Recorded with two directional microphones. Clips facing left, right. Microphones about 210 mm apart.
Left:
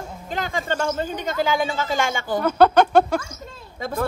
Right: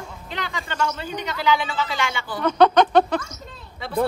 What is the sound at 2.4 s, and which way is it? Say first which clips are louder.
Speech: even; 5° left (ahead or behind).